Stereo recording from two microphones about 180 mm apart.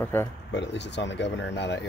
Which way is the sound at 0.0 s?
10° left (ahead or behind).